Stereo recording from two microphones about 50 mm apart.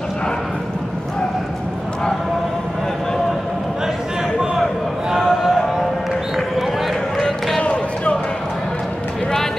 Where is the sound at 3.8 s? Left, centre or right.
Centre.